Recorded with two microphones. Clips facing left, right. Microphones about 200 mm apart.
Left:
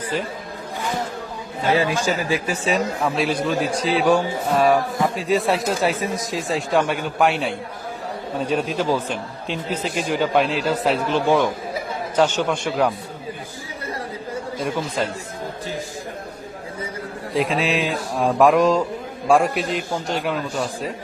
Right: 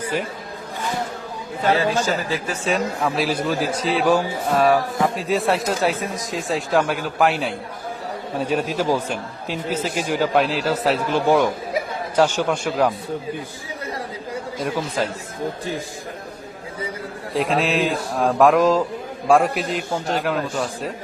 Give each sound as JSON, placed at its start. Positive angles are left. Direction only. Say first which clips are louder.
{"t": 0.0, "sound": "a man's voice", "louder": "right 1 dB", "side_deg": -10}
{"t": 2.0, "sound": "a man's voice", "louder": "even", "side_deg": 10}
{"t": 2.6, "sound": "a man's voice", "louder": "even", "side_deg": 0}
{"t": 14.6, "sound": "a man's voice", "louder": "right 1 dB", "side_deg": 0}
{"t": 17.3, "sound": "a man's voice", "louder": "right 1 dB", "side_deg": 0}